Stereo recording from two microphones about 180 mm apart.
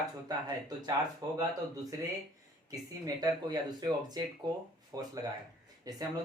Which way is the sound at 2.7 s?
20° right (ahead or behind).